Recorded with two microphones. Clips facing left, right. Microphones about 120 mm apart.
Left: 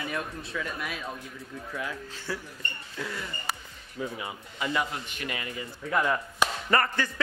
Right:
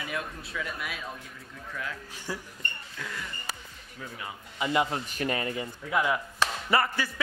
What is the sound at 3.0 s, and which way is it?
A man's voice, 5° left (ahead or behind).